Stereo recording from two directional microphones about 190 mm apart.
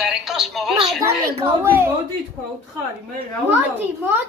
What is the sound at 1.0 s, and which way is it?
Speech, 15° right (ahead or behind).